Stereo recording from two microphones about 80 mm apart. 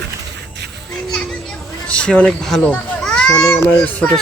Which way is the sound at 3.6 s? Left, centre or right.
Centre.